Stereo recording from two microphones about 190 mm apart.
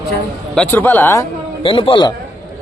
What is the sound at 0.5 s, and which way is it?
Speech, 10° left (ahead or behind).